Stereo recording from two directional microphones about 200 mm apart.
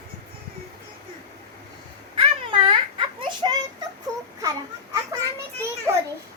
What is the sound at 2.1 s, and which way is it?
Babbling, 25° right (ahead or behind).